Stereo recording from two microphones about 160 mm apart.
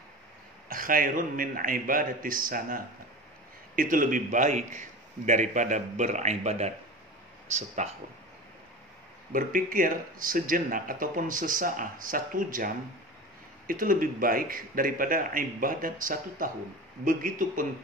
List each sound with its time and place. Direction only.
0.7 s a man's voice: 60° right (ahead or behind)
9.3 s speech: 60° right (ahead or behind)